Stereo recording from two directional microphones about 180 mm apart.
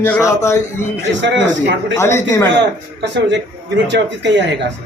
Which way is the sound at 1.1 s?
85° right.